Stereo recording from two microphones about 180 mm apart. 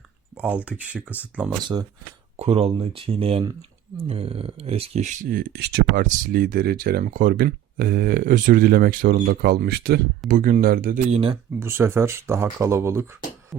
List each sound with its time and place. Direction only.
0.3 s speech: 10° right (ahead or behind)
1.5 s speech: 25° right (ahead or behind)
2.3 s speech: 35° right (ahead or behind); by 5.8 s 65° right (ahead or behind)
6.0 s speech: 45° right (ahead or behind); by 10.0 s 60° right (ahead or behind)
10.2 s speech: 45° right (ahead or behind)
11.1 s speech: 30° right (ahead or behind)
11.6 s speech: 15° right (ahead or behind)
13.5 s music: centre (ahead or behind)